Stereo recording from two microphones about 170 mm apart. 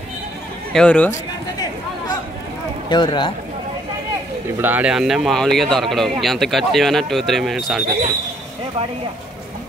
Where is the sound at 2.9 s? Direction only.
25° left (ahead or behind).